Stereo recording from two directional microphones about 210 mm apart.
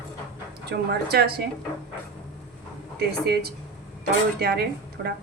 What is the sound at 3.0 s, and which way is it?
Speech, 50° right (ahead or behind).